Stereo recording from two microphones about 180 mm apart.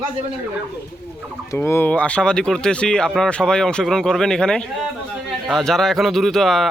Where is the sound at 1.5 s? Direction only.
10° left (ahead or behind).